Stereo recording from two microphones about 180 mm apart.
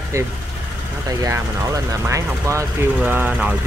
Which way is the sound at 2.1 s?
15° right (ahead or behind).